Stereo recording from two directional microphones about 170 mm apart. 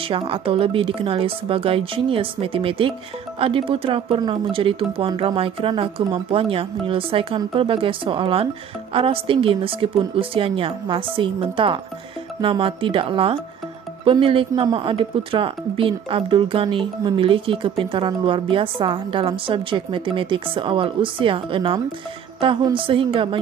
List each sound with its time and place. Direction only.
0.0 s speech: 30° right (ahead or behind)